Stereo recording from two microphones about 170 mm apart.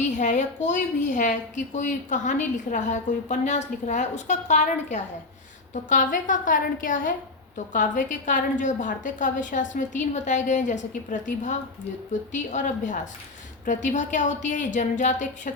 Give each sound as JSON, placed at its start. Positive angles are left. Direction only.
{"t": 0.0, "sound": "a woman's voice", "side_deg": 45}